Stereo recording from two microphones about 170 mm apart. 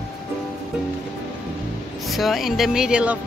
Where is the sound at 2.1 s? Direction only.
Centre (ahead or behind).